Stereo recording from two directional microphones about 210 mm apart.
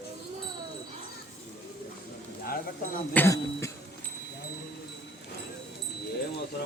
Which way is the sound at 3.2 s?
15° left (ahead or behind).